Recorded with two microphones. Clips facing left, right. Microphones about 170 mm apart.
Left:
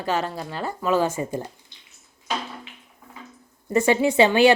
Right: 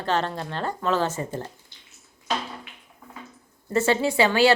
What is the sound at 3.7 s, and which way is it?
Speech, 15° left (ahead or behind).